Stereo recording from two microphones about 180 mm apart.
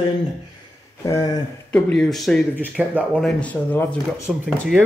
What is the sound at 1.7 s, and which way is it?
Speech, 5° left (ahead or behind).